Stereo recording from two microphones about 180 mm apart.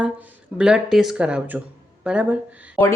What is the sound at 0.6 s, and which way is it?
Speech, 5° right (ahead or behind).